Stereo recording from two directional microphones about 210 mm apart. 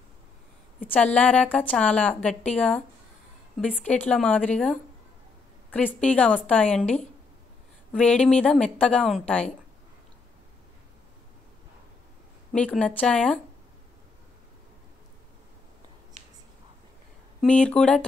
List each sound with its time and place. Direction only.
0.9 s a woman's voice: 5° left (ahead or behind)
12.5 s a woman's voice: 5° left (ahead or behind)
16.2 s a sound: 35° right (ahead or behind)
17.4 s a woman's voice: 5° left (ahead or behind)